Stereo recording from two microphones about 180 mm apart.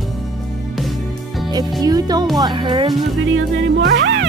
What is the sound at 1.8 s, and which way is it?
Music, 20° right (ahead or behind).